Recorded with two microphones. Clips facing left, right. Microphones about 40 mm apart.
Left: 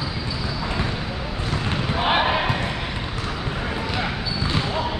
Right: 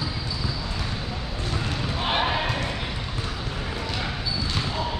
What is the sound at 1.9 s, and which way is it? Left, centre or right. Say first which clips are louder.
Basketball bounce: left 5 dB; centre.